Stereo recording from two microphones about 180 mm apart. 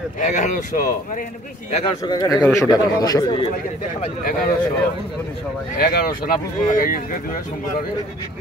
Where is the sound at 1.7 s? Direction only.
35° left (ahead or behind).